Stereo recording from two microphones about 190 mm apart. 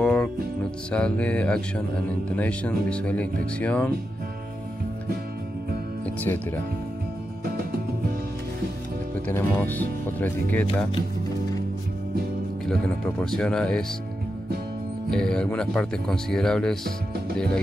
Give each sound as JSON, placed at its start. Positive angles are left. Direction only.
{"t": 0.0, "sound": "music", "side_deg": 5}
{"t": 0.9, "sound": "speech", "side_deg": 5}
{"t": 6.0, "sound": "speech", "side_deg": 10}
{"t": 9.3, "sound": "speech", "side_deg": 10}
{"t": 12.6, "sound": "speech", "side_deg": 5}
{"t": 15.0, "sound": "speech", "side_deg": 5}